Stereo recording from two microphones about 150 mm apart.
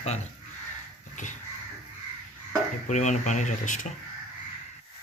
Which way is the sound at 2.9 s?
50° left (ahead or behind).